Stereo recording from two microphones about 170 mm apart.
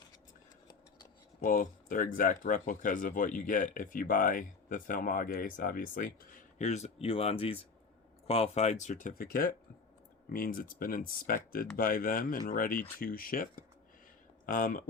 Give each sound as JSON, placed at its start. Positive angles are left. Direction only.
{"t": 1.4, "sound": "speech", "side_deg": 55}
{"t": 6.6, "sound": "speech", "side_deg": 40}